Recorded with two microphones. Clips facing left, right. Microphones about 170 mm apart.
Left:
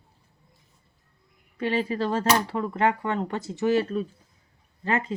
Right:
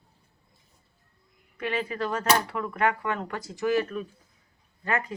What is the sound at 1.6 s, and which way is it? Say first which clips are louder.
Speech: left 4 dB; 30° left (ahead or behind).